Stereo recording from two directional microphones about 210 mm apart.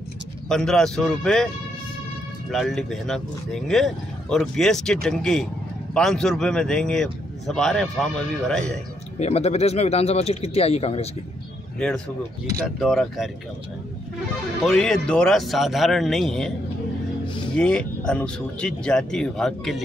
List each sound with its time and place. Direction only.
0.5 s a man's voice: centre (ahead or behind)
2.5 s a man's voice: centre (ahead or behind)
9.2 s speech: 30° left (ahead or behind)
12.6 s a man's voice: centre (ahead or behind)
14.6 s a man's voice: 5° left (ahead or behind)
17.6 s a man's voice: 5° left (ahead or behind)